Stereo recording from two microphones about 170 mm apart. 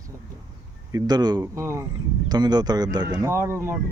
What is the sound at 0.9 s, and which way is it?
Speech, 25° right (ahead or behind).